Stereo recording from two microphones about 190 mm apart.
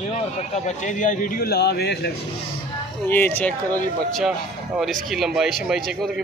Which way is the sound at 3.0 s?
10° left (ahead or behind).